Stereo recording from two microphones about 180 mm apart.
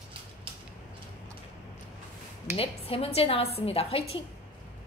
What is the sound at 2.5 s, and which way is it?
A woman's voice, 30° left (ahead or behind).